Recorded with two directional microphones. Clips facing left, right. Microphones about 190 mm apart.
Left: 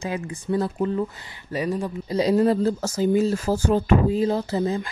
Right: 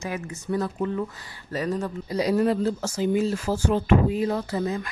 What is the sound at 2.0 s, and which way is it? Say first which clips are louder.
Speech: left 3 dB; 25° left (ahead or behind).